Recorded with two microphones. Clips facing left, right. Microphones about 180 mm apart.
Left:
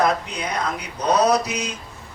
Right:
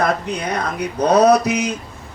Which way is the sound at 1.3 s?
60° right (ahead or behind).